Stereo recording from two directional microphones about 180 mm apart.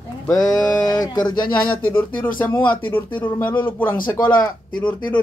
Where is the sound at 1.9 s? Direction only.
10° left (ahead or behind).